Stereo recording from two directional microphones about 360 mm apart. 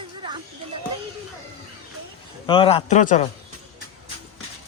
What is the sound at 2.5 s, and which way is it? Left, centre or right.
Speech, centre.